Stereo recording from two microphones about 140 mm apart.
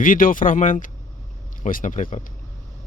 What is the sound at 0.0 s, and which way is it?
Speech, 75° left (ahead or behind).